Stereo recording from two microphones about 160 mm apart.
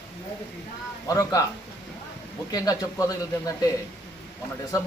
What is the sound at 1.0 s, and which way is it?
Speech, 20° left (ahead or behind).